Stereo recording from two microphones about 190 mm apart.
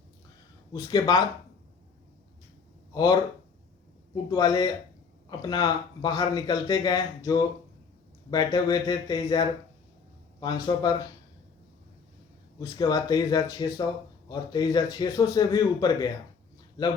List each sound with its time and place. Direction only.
0.7 s speech: 20° left (ahead or behind)
2.9 s speech: 20° left (ahead or behind)
12.5 s speech: 20° left (ahead or behind)